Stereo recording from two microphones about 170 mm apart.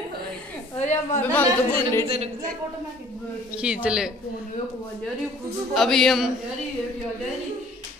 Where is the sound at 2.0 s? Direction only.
35° right (ahead or behind).